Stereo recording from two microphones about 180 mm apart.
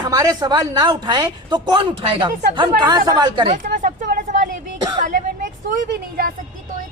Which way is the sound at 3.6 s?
45° right (ahead or behind).